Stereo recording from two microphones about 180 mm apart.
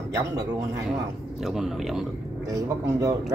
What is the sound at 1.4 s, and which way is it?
Speech, centre (ahead or behind).